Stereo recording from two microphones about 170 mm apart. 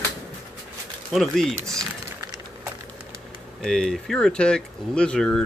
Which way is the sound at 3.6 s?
5° left (ahead or behind).